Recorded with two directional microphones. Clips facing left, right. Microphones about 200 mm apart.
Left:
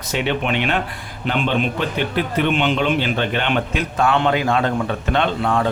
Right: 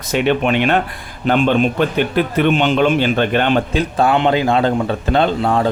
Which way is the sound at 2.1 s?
40° right (ahead or behind).